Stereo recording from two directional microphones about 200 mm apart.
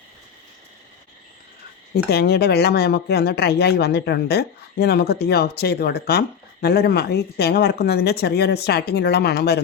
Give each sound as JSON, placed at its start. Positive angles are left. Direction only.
{"t": 2.0, "sound": "speech", "side_deg": 50}